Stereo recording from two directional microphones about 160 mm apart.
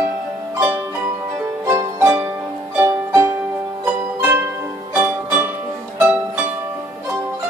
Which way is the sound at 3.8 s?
10° right (ahead or behind).